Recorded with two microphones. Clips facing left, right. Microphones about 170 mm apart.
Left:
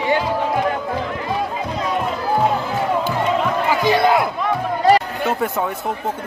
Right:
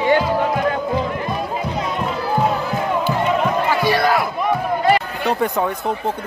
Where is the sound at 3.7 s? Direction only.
15° left (ahead or behind).